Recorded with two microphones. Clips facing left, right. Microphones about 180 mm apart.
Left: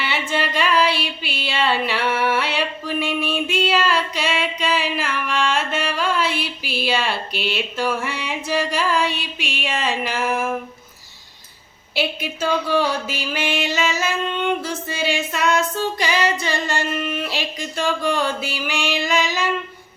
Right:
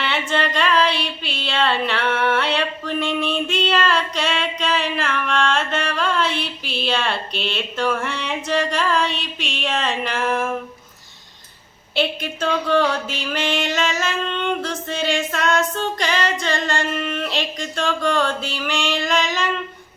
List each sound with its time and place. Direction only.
0.0 s a sound: 5° left (ahead or behind)
8.4 s music: 5° left (ahead or behind)
11.9 s music: 5° left (ahead or behind)